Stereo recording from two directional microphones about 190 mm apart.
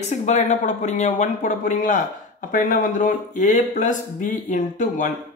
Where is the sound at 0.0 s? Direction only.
35° left (ahead or behind).